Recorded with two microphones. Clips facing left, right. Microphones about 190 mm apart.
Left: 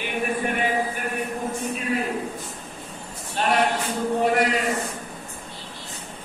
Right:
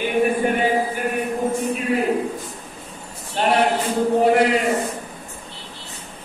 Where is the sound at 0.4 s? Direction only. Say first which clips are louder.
Right 5 dB; 30° right (ahead or behind).